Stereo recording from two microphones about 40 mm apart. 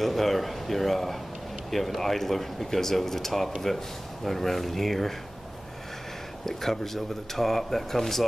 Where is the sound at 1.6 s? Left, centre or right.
Centre.